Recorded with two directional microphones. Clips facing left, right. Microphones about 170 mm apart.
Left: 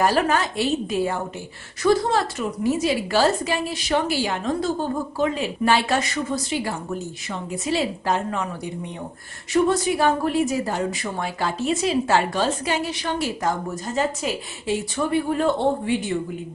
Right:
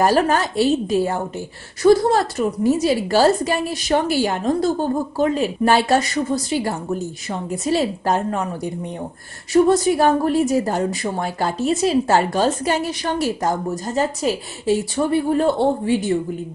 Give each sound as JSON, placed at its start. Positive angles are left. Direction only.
{"t": 0.0, "sound": "speech", "side_deg": -40}
{"t": 9.5, "sound": "speech", "side_deg": -40}